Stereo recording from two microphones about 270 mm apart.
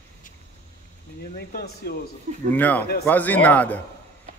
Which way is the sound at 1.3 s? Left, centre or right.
Left.